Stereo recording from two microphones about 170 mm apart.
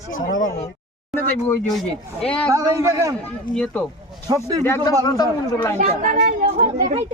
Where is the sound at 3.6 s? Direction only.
5° left (ahead or behind).